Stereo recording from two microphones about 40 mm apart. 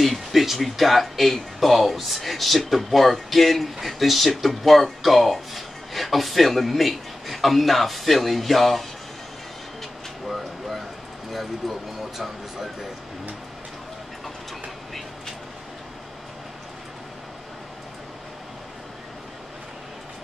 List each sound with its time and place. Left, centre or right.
0.0 s speech: centre
10.2 s a sound: centre
11.3 s speech: centre